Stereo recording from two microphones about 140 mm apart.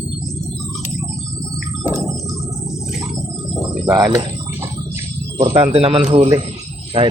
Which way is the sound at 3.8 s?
25° right (ahead or behind).